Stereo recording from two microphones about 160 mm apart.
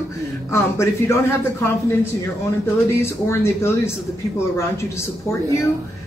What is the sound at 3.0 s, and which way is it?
Speech, 15° left (ahead or behind).